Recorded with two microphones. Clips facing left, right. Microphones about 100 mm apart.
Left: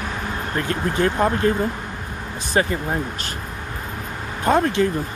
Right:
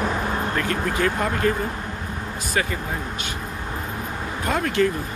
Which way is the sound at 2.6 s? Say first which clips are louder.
Left 5 dB; 30° left (ahead or behind).